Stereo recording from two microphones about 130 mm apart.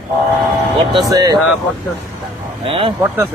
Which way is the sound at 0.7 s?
35° right (ahead or behind).